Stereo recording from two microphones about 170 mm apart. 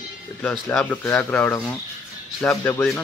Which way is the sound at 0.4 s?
15° left (ahead or behind).